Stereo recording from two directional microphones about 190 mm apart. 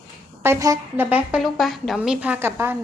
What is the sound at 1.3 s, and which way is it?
A woman's voice, centre (ahead or behind).